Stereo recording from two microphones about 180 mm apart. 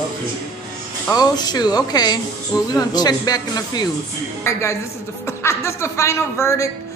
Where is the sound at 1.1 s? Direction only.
20° left (ahead or behind).